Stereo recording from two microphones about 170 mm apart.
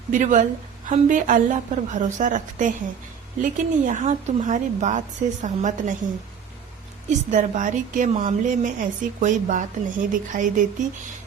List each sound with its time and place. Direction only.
0.1 s a woman's voice: 45° right (ahead or behind)
7.1 s a woman's voice: 45° right (ahead or behind)